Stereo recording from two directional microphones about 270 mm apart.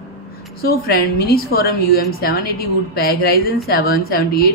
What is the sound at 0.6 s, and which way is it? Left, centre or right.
A woman's voice, left.